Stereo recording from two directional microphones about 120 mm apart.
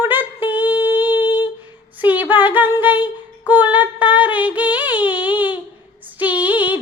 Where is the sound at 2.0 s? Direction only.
15° right (ahead or behind).